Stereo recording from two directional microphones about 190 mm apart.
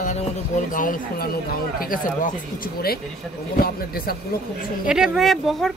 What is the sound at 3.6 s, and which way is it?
Speech, 50° left (ahead or behind).